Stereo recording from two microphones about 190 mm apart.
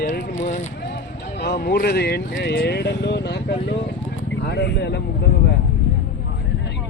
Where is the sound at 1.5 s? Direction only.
50° left (ahead or behind).